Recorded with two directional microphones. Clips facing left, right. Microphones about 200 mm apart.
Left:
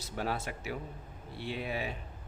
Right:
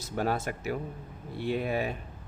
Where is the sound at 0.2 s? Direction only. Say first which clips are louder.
Right 6 dB; 45° right (ahead or behind).